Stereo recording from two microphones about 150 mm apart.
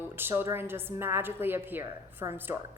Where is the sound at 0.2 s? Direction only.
15° right (ahead or behind).